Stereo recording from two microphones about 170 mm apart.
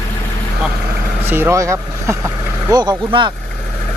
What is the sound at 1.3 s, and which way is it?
Speech, 15° right (ahead or behind).